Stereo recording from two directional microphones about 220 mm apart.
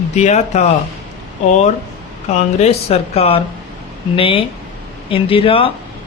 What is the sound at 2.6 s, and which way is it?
Speech, 30° left (ahead or behind).